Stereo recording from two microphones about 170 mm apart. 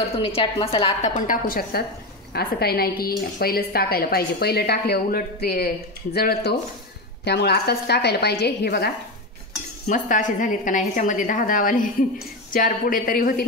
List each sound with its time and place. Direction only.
0.2 s a woman's voice: 30° left (ahead or behind); by 6.5 s 65° left (ahead or behind)
7.2 s a woman's voice: 75° left (ahead or behind)
9.8 s a woman's voice: 45° left (ahead or behind)